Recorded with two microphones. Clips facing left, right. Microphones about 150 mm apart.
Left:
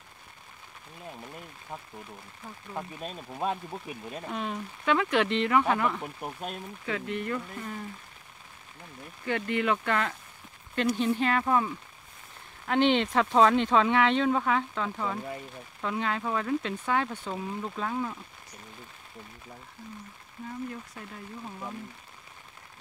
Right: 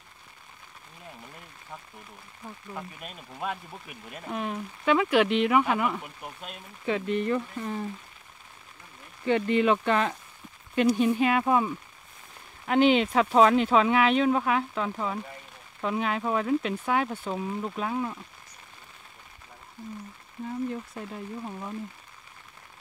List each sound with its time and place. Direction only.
2.7 s speech: 30° left (ahead or behind)
4.3 s speech: 5° right (ahead or behind)
6.2 s speech: 45° left (ahead or behind)
6.9 s speech: 20° right (ahead or behind)
9.2 s speech: 20° right (ahead or behind)